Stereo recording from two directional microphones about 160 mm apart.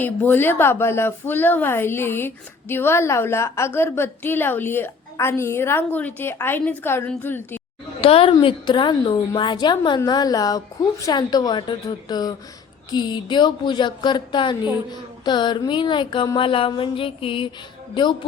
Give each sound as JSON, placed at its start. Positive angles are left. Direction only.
{"t": 0.0, "sound": "a woman's voice", "side_deg": 10}
{"t": 8.0, "sound": "a woman's voice", "side_deg": 35}
{"t": 15.2, "sound": "a sound", "side_deg": 30}
{"t": 17.9, "sound": "a woman's voice", "side_deg": 30}